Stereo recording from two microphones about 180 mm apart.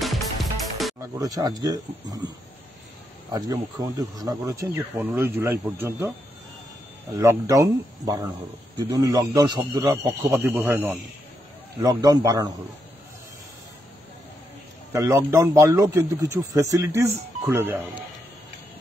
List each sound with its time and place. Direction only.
0.0 s music: centre (ahead or behind)
1.1 s a man's voice: 20° right (ahead or behind)
3.3 s a man's voice: 20° right (ahead or behind)
7.2 s a man's voice: 15° right (ahead or behind)
11.8 s a man's voice: 20° right (ahead or behind)
14.9 s speech: 20° right (ahead or behind)